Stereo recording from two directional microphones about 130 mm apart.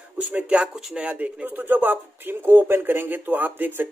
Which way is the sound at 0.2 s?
10° right (ahead or behind).